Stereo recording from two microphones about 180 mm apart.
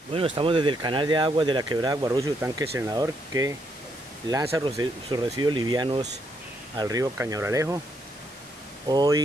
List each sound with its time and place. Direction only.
0.1 s speech: 30° right (ahead or behind)
8.8 s speech: 20° right (ahead or behind)